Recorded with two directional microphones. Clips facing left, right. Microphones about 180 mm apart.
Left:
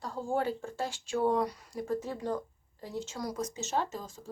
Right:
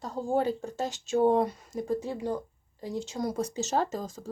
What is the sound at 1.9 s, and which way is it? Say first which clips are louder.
Speech: even; 15° right (ahead or behind).